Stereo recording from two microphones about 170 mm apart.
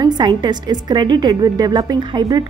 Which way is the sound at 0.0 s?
25° right (ahead or behind).